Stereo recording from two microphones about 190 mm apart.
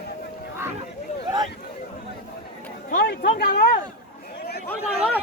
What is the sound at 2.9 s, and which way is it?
Speech, 55° left (ahead or behind).